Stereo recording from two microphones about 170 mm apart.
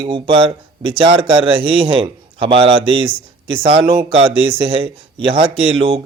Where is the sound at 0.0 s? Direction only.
30° right (ahead or behind).